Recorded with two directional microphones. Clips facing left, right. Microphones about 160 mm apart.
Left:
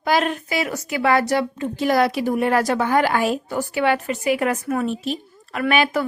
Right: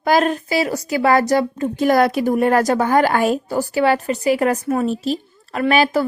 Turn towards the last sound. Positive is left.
turn(degrees=-35)  # may be behind; listen again after turning